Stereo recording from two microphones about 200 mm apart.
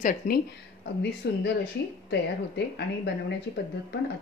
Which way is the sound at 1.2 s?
55° left (ahead or behind).